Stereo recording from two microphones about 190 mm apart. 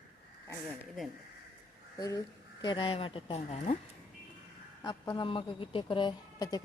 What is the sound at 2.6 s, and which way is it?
A woman's voice, 25° left (ahead or behind).